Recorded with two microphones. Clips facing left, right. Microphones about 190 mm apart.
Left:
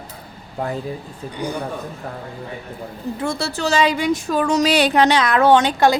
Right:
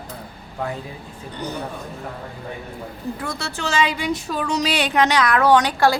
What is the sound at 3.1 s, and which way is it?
A woman's voice, 30° left (ahead or behind).